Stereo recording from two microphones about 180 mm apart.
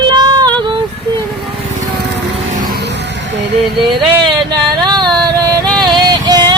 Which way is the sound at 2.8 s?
70° right (ahead or behind).